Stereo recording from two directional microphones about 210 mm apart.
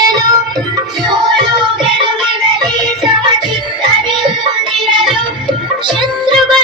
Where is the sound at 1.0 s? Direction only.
20° right (ahead or behind).